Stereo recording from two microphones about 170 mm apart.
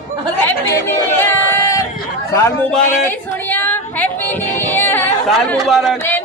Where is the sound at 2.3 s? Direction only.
15° left (ahead or behind).